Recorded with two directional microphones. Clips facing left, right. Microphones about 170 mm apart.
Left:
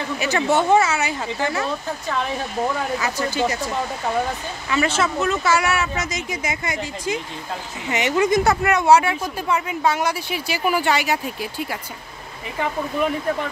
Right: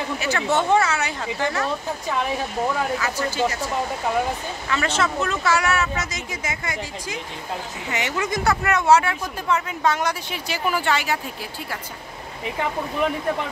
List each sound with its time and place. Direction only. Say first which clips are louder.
0.2 s speech: left 4 dB; 15° left (ahead or behind)
3.0 s speech: left 1 dB; 15° left (ahead or behind)